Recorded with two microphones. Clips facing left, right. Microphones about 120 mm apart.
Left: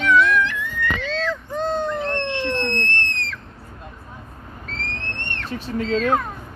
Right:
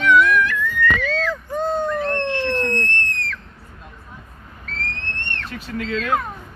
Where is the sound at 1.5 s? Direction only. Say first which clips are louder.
Right 2 dB; 10° right (ahead or behind).